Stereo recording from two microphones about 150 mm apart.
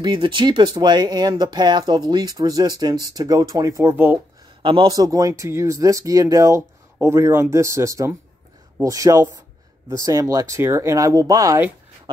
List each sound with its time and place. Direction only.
0.0 s speech: 35° right (ahead or behind); by 4.2 s 10° right (ahead or behind)
4.6 s speech: 35° right (ahead or behind)